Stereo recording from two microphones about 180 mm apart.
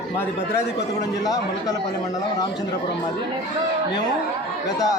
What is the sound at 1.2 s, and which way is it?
Speech, 20° left (ahead or behind).